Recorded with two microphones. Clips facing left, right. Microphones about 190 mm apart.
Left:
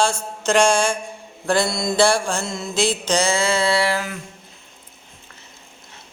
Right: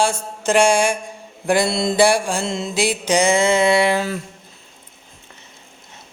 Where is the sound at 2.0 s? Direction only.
15° right (ahead or behind).